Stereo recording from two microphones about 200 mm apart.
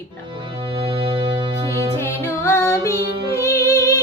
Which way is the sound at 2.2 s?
10° left (ahead or behind).